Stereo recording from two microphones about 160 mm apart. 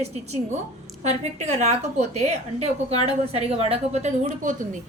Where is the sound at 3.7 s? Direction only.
45° right (ahead or behind).